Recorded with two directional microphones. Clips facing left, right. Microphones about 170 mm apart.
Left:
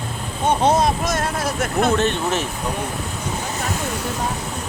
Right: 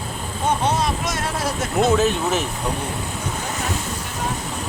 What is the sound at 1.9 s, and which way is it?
Speech, 5° right (ahead or behind).